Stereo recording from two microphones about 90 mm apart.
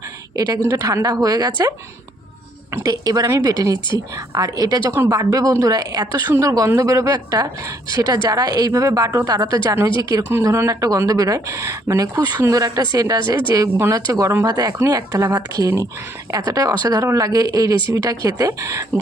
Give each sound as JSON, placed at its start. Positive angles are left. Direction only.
{"t": 0.3, "sound": "a woman's voice", "side_deg": -50}
{"t": 2.8, "sound": "a woman's voice", "side_deg": -45}
{"t": 8.7, "sound": "a woman's voice", "side_deg": -35}